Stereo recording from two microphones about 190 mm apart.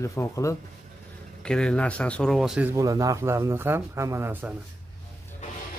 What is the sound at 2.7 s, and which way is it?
A man's voice, 15° right (ahead or behind).